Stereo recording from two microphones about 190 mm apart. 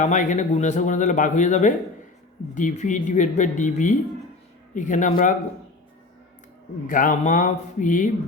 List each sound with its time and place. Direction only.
0.0 s a man's voice: 40° left (ahead or behind)
6.8 s speech: 45° left (ahead or behind)